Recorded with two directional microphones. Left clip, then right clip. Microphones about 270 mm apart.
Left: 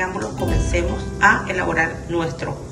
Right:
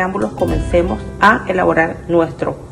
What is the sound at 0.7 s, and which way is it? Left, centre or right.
Speech, centre.